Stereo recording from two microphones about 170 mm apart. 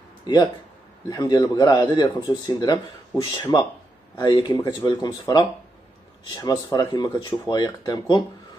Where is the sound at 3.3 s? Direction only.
25° left (ahead or behind).